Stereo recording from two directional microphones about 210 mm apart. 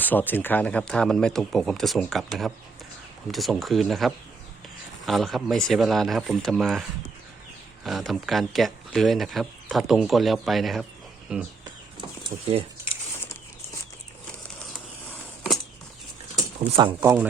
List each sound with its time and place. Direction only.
0.0 s speech: 10° left (ahead or behind)
3.3 s speech: centre (ahead or behind)
7.9 s speech: centre (ahead or behind)
12.3 s speech: 30° right (ahead or behind)
16.6 s speech: 25° right (ahead or behind)
17.0 s speech: 5° right (ahead or behind)